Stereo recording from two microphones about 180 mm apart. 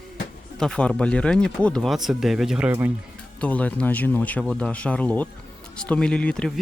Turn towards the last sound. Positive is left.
turn(degrees=5)  # may be behind; listen again after turning